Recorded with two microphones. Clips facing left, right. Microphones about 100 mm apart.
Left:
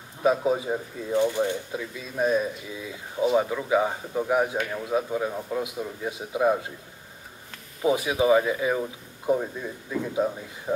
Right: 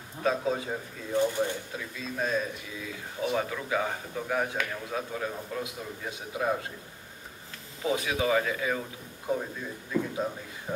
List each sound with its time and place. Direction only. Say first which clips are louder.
0.2 s speech: left 5 dB; 15° left (ahead or behind)
7.8 s speech: left 6 dB; 20° left (ahead or behind)